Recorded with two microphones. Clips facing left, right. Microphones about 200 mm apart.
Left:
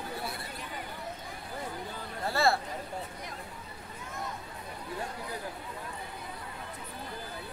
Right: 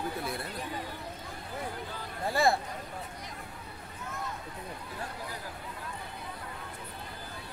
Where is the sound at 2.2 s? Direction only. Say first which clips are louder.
Right 1 dB; 15° right (ahead or behind).